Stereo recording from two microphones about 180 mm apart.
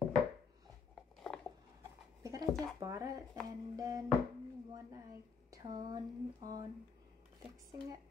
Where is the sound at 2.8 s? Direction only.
20° right (ahead or behind).